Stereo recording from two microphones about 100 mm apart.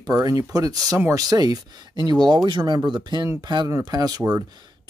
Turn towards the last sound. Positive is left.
turn(degrees=-40)  # may be behind; listen again after turning